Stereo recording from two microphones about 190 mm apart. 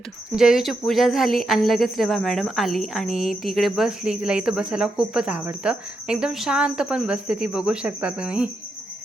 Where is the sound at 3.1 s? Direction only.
45° left (ahead or behind).